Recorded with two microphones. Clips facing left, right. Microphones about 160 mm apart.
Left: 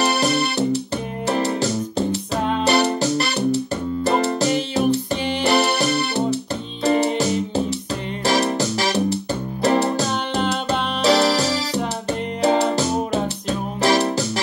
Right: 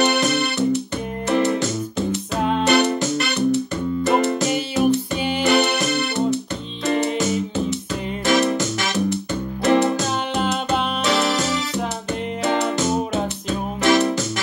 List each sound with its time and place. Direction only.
0.0 s keyboard: 35° left (ahead or behind)
1.2 s music: 35° left (ahead or behind)
10.3 s music: 5° right (ahead or behind)
11.0 s music: 35° left (ahead or behind)